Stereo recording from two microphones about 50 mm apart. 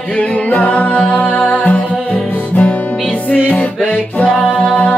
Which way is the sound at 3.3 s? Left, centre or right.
Left.